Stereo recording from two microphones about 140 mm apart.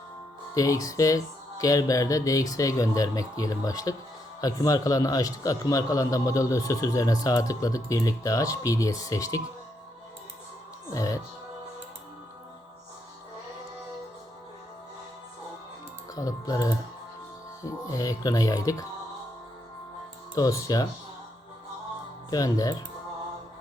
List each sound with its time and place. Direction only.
0.5 s a man's voice: 25° left (ahead or behind)
10.9 s a man's voice: 25° left (ahead or behind)
16.1 s a man's voice: 25° left (ahead or behind)
20.3 s a man's voice: 25° left (ahead or behind)
22.3 s a man's voice: 25° left (ahead or behind)